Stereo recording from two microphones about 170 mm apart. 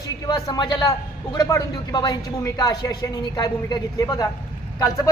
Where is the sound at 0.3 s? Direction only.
25° left (ahead or behind).